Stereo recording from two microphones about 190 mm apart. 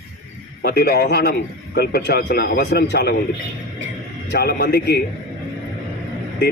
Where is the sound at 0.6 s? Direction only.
55° left (ahead or behind).